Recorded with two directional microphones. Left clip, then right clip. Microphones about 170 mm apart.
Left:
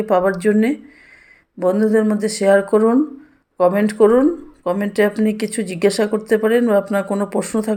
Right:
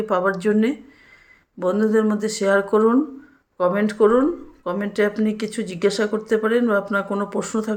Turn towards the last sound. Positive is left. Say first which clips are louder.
# left 4 dB
turn(degrees=20)  # may be behind; listen again after turning